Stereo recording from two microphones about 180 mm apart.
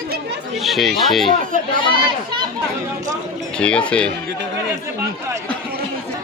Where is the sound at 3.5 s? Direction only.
5° left (ahead or behind).